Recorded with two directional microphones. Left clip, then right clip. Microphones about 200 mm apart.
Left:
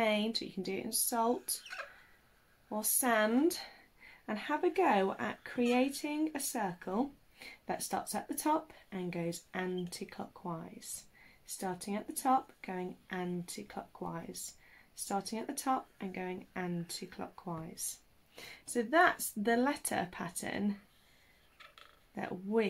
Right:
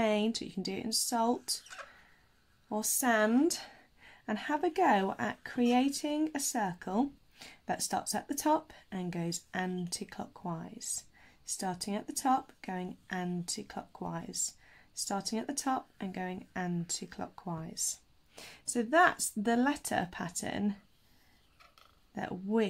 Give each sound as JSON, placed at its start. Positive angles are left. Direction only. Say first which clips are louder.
{"t": 0.0, "sound": "speech", "louder": "right 1 dB", "side_deg": -45}
{"t": 1.8, "sound": "a sound", "louder": "left 3 dB", "side_deg": 5}
{"t": 2.7, "sound": "a woman's voice", "louder": "right 2 dB", "side_deg": -45}
{"t": 22.1, "sound": "a woman's voice", "louder": "even", "side_deg": -35}